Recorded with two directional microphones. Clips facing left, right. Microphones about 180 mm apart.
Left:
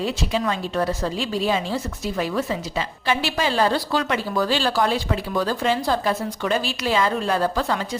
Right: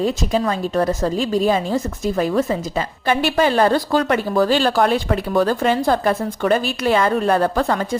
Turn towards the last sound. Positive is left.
turn(degrees=-55)  # may be behind; listen again after turning